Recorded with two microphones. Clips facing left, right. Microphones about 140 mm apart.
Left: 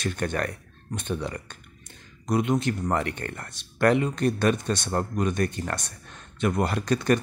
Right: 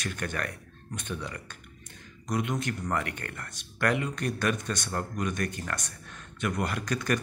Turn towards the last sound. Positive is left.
turn(degrees=30)  # may be behind; listen again after turning